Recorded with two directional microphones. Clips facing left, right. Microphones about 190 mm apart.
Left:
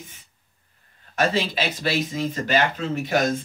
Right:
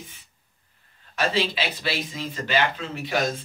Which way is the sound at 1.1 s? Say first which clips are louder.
Left 2 dB; 45° left (ahead or behind).